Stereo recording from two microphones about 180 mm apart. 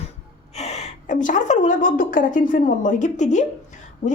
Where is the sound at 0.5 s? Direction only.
40° left (ahead or behind).